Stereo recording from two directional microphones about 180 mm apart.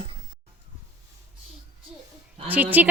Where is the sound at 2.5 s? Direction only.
10° right (ahead or behind).